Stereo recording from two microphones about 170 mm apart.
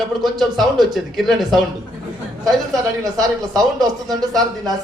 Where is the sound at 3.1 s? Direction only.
20° right (ahead or behind).